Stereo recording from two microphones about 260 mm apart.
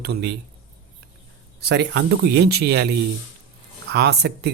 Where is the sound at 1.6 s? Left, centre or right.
Right.